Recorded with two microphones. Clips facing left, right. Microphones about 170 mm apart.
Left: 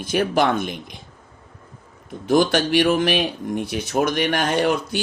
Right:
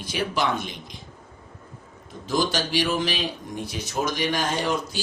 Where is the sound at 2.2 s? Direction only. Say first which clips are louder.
Left 7 dB; 60° left (ahead or behind).